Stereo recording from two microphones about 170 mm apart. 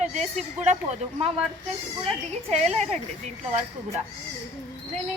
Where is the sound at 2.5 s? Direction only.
40° right (ahead or behind).